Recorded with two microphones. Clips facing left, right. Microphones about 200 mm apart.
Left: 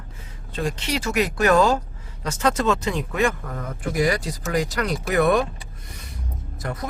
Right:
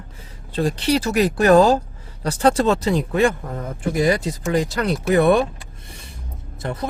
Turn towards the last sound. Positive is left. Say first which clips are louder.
# right 4 dB
turn(degrees=-30)  # may be behind; listen again after turning